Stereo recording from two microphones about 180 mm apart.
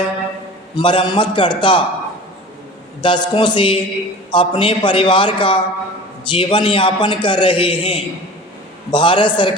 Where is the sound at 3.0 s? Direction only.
25° left (ahead or behind).